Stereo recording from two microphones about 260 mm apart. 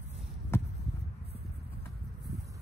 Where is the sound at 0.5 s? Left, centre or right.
Centre.